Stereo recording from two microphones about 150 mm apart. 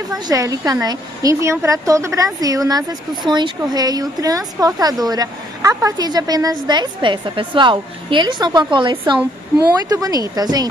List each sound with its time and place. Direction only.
0.3 s a woman's voice: 25° right (ahead or behind)